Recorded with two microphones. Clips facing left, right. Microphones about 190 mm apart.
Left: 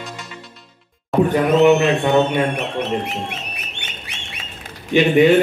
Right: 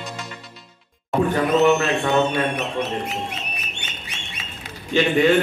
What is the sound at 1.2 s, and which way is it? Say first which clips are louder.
A man's voice: left 4 dB; 15° left (ahead or behind).